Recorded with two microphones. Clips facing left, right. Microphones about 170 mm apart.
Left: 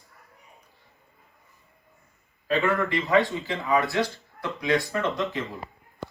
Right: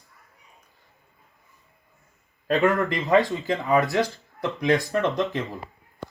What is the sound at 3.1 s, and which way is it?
Speech, 40° right (ahead or behind).